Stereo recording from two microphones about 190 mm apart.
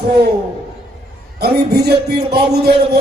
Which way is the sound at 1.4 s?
55° right (ahead or behind).